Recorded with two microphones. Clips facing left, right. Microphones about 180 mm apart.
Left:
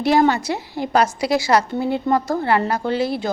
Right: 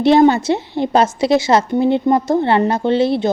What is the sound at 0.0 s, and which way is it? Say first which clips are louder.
A woman's voice: right 6 dB; 25° right (ahead or behind).